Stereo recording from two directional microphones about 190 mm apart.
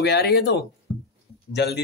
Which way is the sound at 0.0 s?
60° left (ahead or behind).